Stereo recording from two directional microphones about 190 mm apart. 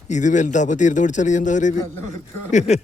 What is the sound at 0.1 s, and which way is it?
Speech, 40° left (ahead or behind).